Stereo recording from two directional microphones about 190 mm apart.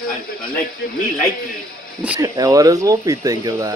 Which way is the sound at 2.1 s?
20° right (ahead or behind).